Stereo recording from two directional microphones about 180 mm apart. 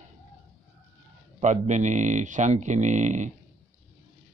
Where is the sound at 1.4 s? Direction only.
40° right (ahead or behind).